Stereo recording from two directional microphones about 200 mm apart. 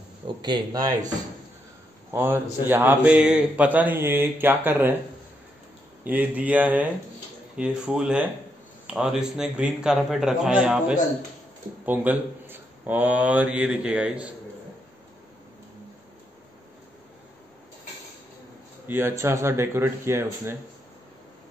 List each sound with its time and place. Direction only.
0.4 s speech: 20° right (ahead or behind)
2.0 s a man's voice: 10° right (ahead or behind)
6.0 s a man's voice: 10° right (ahead or behind)
18.9 s a man's voice: 10° right (ahead or behind)